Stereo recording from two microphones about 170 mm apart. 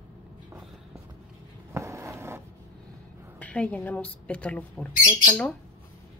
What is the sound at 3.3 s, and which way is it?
A woman's voice, 10° left (ahead or behind).